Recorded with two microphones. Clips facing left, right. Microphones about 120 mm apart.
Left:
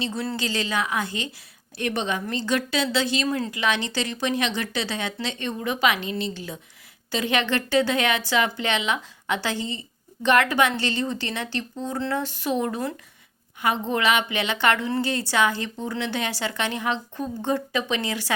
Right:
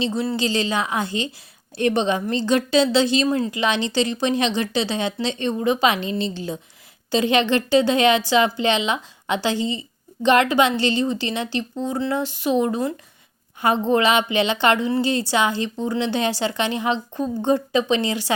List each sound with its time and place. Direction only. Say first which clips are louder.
0.0 s a woman's voice: right 5 dB; 20° right (ahead or behind)
13.6 s a woman's voice: right 6 dB; 30° right (ahead or behind)